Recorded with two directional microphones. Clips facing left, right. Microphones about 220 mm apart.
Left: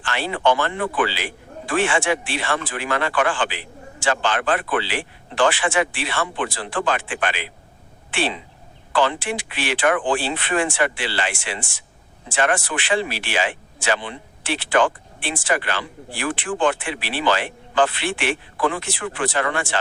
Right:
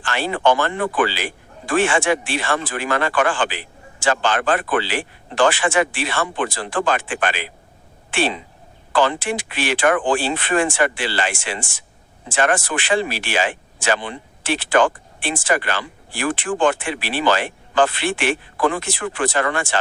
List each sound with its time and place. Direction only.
0.0 s speech: 45° right (ahead or behind)